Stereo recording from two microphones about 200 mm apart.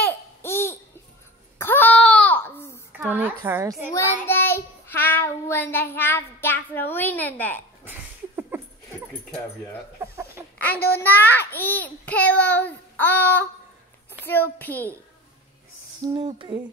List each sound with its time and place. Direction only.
0.0 s babbling: 10° left (ahead or behind)
1.6 s wail: 10° left (ahead or behind)
3.0 s a sound: 10° right (ahead or behind)
3.9 s child singing: 10° left (ahead or behind)
8.5 s a sound: 10° right (ahead or behind)
11.0 s a child's voice: 10° left (ahead or behind)
16.1 s music: 25° right (ahead or behind)